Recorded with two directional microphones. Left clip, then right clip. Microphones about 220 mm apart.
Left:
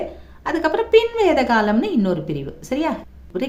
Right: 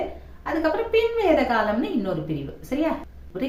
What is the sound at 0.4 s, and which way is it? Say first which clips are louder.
A woman's voice: left 4 dB; 50° left (ahead or behind).